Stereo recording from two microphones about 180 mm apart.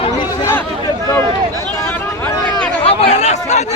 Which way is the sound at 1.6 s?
10° left (ahead or behind).